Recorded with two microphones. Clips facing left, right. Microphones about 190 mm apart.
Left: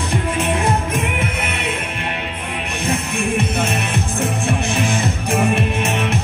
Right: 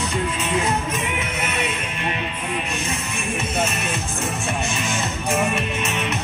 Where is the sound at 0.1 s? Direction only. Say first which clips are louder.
Left 6 dB; 60° left (ahead or behind).